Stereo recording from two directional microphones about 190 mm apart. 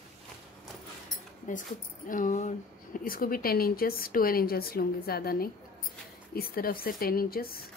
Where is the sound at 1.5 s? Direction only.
45° left (ahead or behind).